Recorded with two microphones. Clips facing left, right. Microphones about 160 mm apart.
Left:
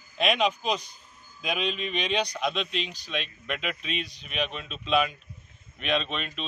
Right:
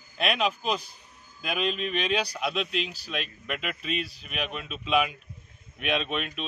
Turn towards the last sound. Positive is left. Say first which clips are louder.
# right 2 dB
turn(degrees=-5)  # may be behind; listen again after turning